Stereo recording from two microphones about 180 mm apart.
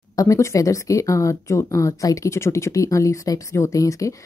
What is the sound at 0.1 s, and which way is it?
Speech, 20° left (ahead or behind).